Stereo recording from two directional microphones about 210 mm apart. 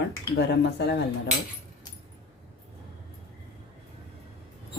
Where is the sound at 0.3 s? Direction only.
55° left (ahead or behind).